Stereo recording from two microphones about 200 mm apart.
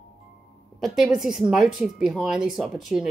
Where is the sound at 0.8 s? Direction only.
Centre (ahead or behind).